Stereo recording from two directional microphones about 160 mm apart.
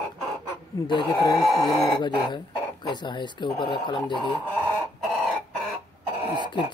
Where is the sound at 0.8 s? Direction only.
30° left (ahead or behind).